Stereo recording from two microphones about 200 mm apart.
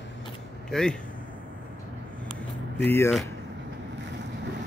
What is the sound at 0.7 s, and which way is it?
Speech, 5° left (ahead or behind).